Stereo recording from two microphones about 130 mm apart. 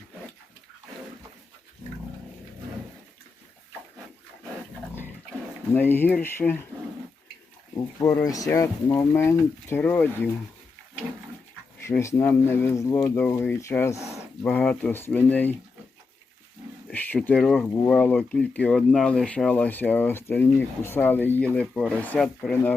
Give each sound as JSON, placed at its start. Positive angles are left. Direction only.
{"t": 5.7, "sound": "speech", "side_deg": 15}
{"t": 8.0, "sound": "speech", "side_deg": 25}
{"t": 11.8, "sound": "speech", "side_deg": 20}
{"t": 14.4, "sound": "speech", "side_deg": 5}
{"t": 16.9, "sound": "speech", "side_deg": 15}